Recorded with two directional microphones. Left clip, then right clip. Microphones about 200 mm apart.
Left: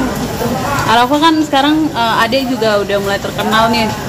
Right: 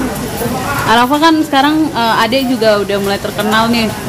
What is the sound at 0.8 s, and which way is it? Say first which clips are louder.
A woman's voice: right 1 dB; 55° right (ahead or behind).